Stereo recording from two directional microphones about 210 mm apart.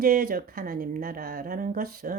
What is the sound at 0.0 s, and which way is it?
A woman's voice, 45° right (ahead or behind).